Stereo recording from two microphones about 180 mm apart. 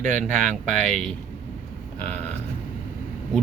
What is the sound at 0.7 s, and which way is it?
Speech, 5° left (ahead or behind).